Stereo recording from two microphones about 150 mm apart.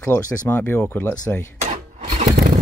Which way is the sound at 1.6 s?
55° right (ahead or behind).